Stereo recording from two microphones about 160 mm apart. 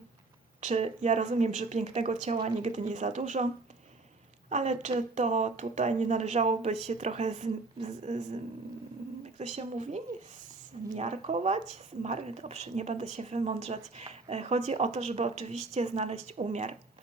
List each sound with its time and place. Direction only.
0.6 s speech: 45° right (ahead or behind)